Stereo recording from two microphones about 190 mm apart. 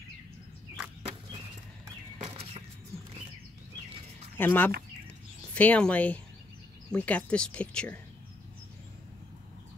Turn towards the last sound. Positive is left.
turn(degrees=5)  # may be behind; listen again after turning